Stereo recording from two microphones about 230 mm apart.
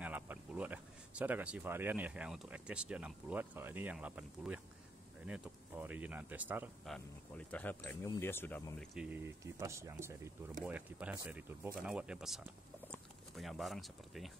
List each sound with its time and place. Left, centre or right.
0.0 s speech: centre
7.3 s speech: centre
8.9 s speech: centre